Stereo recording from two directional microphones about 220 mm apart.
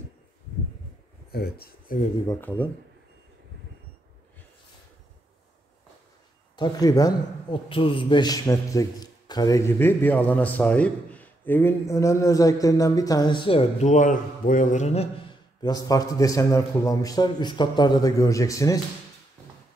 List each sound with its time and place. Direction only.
1.3 s speech: 45° left (ahead or behind)
2.2 s a man's voice: 10° left (ahead or behind)
6.5 s a man's voice: 20° left (ahead or behind)
15.6 s a man's voice: 15° left (ahead or behind)